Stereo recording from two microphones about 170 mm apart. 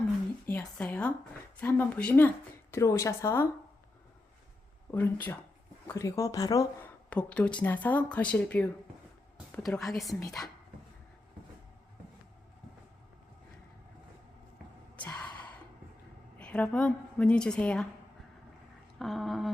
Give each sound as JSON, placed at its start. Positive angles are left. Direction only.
{"t": 0.4, "sound": "a sound", "side_deg": 10}
{"t": 1.6, "sound": "speech", "side_deg": 10}
{"t": 4.9, "sound": "a woman's voice", "side_deg": 15}
{"t": 14.9, "sound": "gasp", "side_deg": 10}
{"t": 16.4, "sound": "speech", "side_deg": 5}
{"t": 18.9, "sound": "a sound", "side_deg": 0}